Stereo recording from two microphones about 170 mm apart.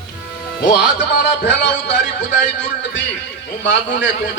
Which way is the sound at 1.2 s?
90° left.